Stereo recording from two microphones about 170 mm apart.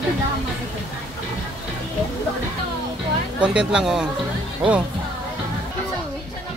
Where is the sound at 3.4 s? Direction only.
5° right (ahead or behind).